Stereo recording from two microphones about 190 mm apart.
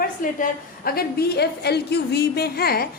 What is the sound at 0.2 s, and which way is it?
A woman's voice, 45° left (ahead or behind).